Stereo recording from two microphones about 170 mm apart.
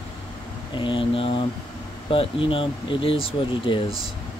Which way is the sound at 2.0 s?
30° left (ahead or behind).